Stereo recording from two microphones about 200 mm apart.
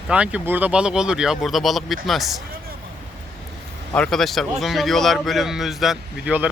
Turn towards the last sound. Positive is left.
turn(degrees=-5)  # may be behind; listen again after turning